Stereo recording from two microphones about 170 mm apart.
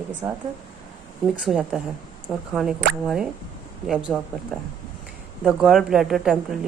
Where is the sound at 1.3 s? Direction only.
5° right (ahead or behind).